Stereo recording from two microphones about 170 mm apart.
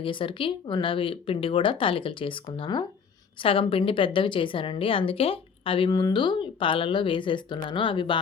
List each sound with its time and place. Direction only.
0.0 s a woman's voice: 30° left (ahead or behind)